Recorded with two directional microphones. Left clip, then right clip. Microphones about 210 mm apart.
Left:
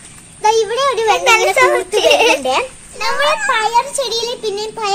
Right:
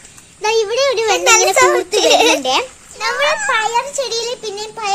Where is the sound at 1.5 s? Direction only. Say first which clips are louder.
Even; 55° right (ahead or behind).